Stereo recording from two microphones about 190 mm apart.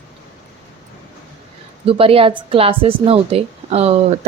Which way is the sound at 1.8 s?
30° right (ahead or behind).